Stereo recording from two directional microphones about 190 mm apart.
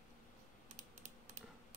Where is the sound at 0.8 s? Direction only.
40° right (ahead or behind).